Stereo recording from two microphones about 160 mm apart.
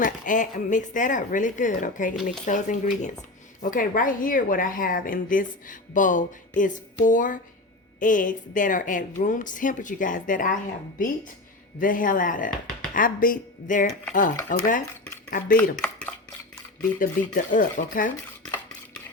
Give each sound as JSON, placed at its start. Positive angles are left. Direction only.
{"t": 0.0, "sound": "a woman's voice", "side_deg": 55}
{"t": 15.7, "sound": "dishes", "side_deg": 5}
{"t": 17.0, "sound": "a woman's voice", "side_deg": 60}